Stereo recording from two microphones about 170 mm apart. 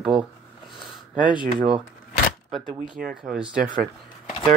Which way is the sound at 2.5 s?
Centre (ahead or behind).